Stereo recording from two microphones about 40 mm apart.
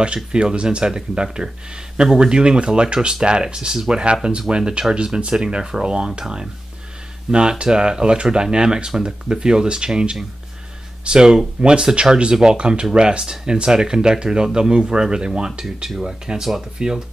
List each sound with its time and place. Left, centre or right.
0.0 s speech: right